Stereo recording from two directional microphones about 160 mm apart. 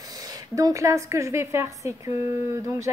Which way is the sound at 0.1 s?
25° right (ahead or behind).